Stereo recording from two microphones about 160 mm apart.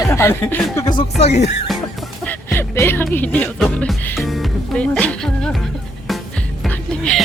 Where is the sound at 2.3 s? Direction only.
15° left (ahead or behind).